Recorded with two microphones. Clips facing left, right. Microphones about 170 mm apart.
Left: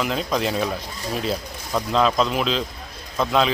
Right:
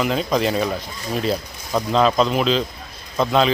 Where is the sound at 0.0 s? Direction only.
Centre (ahead or behind).